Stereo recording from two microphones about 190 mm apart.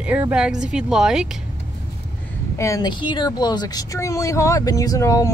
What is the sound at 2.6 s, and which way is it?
Speech, 20° left (ahead or behind).